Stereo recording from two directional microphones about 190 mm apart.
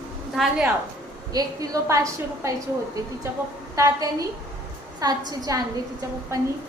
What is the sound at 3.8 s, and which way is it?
A woman's voice, 20° right (ahead or behind).